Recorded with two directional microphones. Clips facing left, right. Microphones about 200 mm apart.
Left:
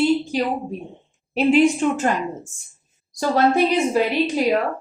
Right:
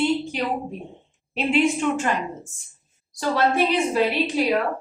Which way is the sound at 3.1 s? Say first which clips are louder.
Left 4 dB; 40° left (ahead or behind).